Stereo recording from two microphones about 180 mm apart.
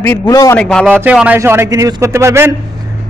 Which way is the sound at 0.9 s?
5° right (ahead or behind).